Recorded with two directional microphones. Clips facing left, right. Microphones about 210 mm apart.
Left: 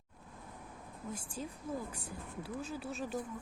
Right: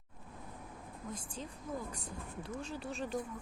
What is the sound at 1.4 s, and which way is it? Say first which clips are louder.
Speech: left 4 dB; 5° left (ahead or behind).